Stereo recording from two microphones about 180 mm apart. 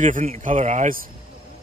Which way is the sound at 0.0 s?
45° right (ahead or behind).